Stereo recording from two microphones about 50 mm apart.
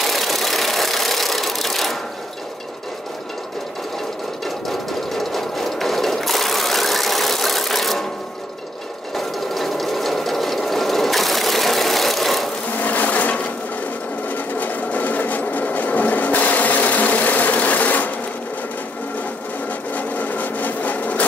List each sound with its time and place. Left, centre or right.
0.0 s engine: centre
4.6 s sewing machine: centre
9.1 s sewing machine: centre
12.7 s filing: left
14.3 s sewing machine: left
20.0 s a sound: left